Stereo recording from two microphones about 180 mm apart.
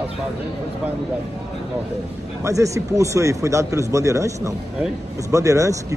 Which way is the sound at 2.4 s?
15° right (ahead or behind).